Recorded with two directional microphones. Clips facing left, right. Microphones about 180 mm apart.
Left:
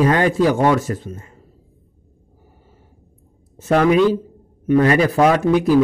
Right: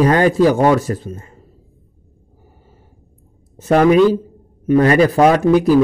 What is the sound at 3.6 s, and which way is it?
A man's voice, 40° right (ahead or behind).